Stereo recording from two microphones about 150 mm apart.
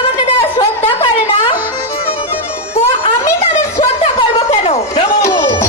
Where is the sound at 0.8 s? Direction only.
40° left (ahead or behind).